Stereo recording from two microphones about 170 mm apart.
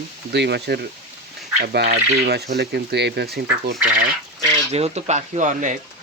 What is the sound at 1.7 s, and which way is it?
Speech, 65° right (ahead or behind).